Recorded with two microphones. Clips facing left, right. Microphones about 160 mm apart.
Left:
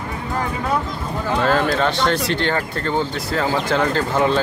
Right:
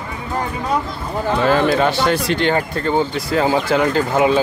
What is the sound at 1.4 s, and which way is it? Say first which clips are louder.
Speech: right 3 dB; 10° right (ahead or behind).